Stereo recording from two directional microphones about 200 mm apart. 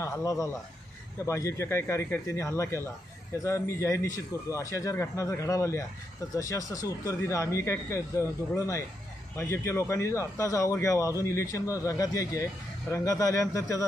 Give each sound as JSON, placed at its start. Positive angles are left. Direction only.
{"t": 0.0, "sound": "speech", "side_deg": 15}